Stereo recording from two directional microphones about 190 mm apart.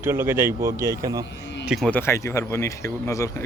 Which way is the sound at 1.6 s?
Centre (ahead or behind).